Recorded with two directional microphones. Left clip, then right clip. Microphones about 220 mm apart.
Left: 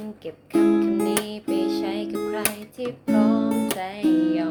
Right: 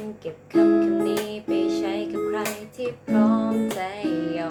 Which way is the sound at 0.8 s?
35° left (ahead or behind).